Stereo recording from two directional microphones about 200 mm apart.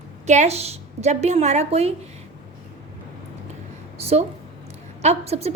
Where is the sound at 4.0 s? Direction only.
30° right (ahead or behind).